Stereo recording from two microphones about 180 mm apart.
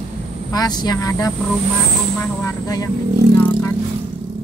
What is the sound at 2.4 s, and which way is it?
Music, 20° left (ahead or behind).